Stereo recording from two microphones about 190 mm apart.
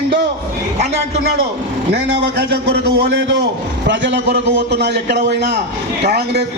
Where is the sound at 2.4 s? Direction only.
60° right (ahead or behind).